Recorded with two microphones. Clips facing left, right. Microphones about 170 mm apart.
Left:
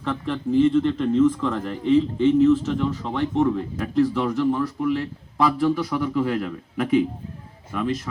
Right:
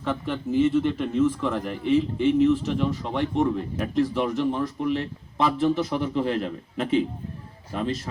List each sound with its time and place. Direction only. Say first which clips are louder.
0.0 s a man's voice: left 2 dB; 5° right (ahead or behind); by 8.1 s 30° right (ahead or behind)